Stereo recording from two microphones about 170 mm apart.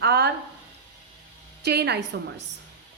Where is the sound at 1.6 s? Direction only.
75° right (ahead or behind).